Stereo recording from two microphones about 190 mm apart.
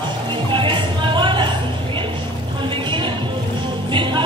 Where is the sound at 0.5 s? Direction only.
25° right (ahead or behind).